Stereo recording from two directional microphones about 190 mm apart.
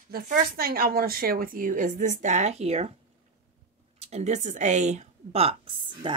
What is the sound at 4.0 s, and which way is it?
A woman's voice, 35° right (ahead or behind).